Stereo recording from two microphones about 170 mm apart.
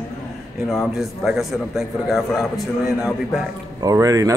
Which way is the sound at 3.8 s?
20° right (ahead or behind).